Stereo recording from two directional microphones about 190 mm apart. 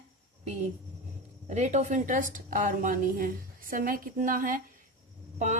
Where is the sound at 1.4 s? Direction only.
40° right (ahead or behind).